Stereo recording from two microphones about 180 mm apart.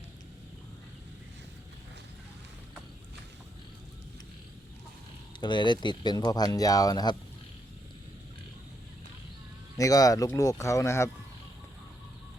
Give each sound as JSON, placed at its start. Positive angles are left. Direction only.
{"t": 5.4, "sound": "speech", "side_deg": 25}
{"t": 9.7, "sound": "speech", "side_deg": 20}